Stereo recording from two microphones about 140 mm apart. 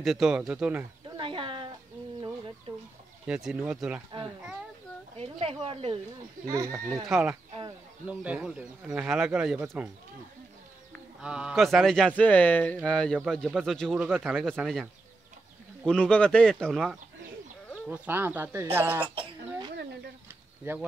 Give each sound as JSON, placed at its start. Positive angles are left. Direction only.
{"t": 0.0, "sound": "speech", "side_deg": 0}
{"t": 1.1, "sound": "a sound", "side_deg": -35}
{"t": 2.7, "sound": "chicken", "side_deg": -40}
{"t": 3.3, "sound": "speech", "side_deg": -5}
{"t": 5.1, "sound": "chicken", "side_deg": -45}
{"t": 6.5, "sound": "speech", "side_deg": -25}
{"t": 7.1, "sound": "speech", "side_deg": -5}
{"t": 11.1, "sound": "speech", "side_deg": -5}
{"t": 13.9, "sound": "speech", "side_deg": -10}
{"t": 14.3, "sound": "speech", "side_deg": 0}
{"t": 17.8, "sound": "speech", "side_deg": -10}
{"t": 20.2, "sound": "a sound", "side_deg": -15}